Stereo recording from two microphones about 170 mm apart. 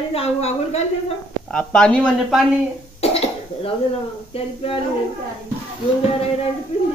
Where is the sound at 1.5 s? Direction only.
5° left (ahead or behind).